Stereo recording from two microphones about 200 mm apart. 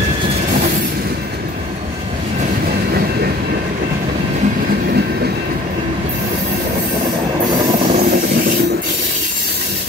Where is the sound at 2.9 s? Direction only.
50° right (ahead or behind).